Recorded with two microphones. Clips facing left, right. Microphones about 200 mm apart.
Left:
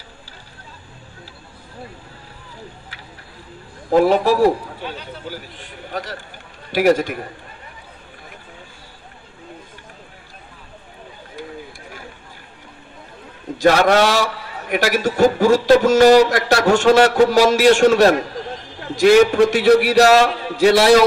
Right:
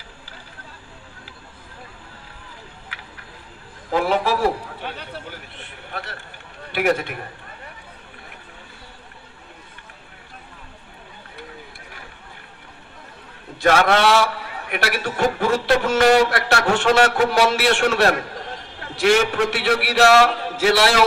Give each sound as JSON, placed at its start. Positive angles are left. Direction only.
{"t": 3.9, "sound": "a man's voice", "side_deg": 40}
{"t": 5.9, "sound": "a man's voice", "side_deg": 40}
{"t": 13.6, "sound": "a man's voice", "side_deg": 40}